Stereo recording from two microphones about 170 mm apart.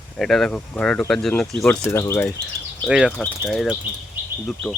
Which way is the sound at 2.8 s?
5° right (ahead or behind).